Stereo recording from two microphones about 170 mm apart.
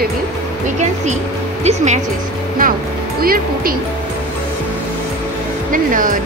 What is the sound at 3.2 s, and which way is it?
Speech, 60° right (ahead or behind).